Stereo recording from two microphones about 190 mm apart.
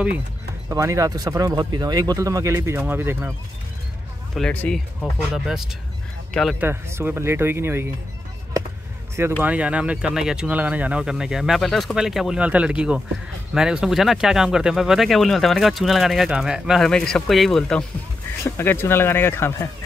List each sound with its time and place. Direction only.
0.7 s speech: 15° right (ahead or behind)
4.4 s speech: 5° left (ahead or behind); by 7.8 s 10° right (ahead or behind)
9.4 s speech: 5° right (ahead or behind); by 19.7 s 10° left (ahead or behind)